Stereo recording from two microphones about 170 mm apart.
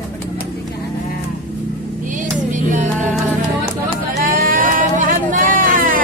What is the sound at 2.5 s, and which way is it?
Music, 45° right (ahead or behind).